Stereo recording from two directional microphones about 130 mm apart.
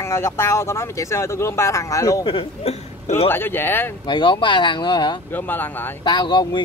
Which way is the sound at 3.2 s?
15° left (ahead or behind).